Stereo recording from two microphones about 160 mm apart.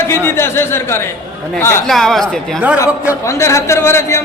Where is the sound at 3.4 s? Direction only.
20° left (ahead or behind).